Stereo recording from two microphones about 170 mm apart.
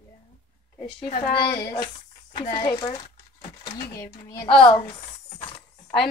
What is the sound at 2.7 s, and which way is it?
Crumpling, 25° left (ahead or behind).